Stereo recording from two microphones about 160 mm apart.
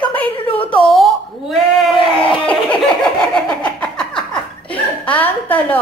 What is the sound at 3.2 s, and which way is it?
Laughter, 5° left (ahead or behind).